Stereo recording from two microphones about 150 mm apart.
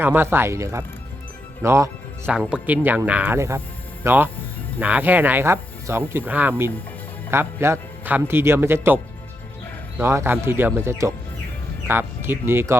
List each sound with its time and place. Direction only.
0.0 s a man's voice: 15° right (ahead or behind)
2.3 s a man's voice: 5° right (ahead or behind)
10.0 s a man's voice: 15° right (ahead or behind)